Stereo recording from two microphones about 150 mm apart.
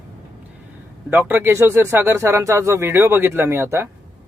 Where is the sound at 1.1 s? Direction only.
15° right (ahead or behind).